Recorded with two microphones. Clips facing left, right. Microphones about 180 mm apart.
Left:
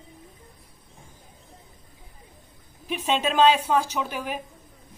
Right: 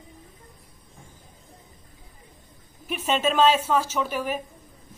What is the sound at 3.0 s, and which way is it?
A woman's voice, 15° left (ahead or behind).